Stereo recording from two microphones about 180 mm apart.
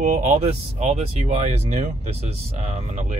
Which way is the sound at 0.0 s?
40° right (ahead or behind).